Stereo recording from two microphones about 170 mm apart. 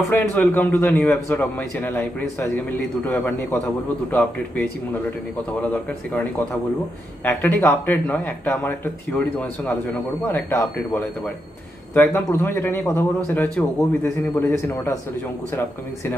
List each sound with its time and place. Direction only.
0.1 s speech: 10° left (ahead or behind)
7.2 s speech: 10° left (ahead or behind)